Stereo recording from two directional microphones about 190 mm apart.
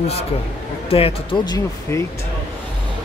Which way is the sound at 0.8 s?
30° left (ahead or behind).